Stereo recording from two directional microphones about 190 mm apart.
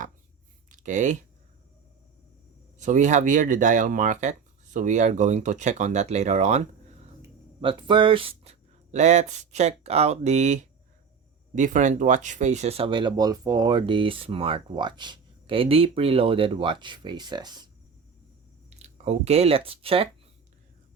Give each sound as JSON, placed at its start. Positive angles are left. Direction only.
{"t": 0.7, "sound": "a sound", "side_deg": -40}
{"t": 2.7, "sound": "speech", "side_deg": -40}
{"t": 7.6, "sound": "speech", "side_deg": -25}
{"t": 18.8, "sound": "speech", "side_deg": -35}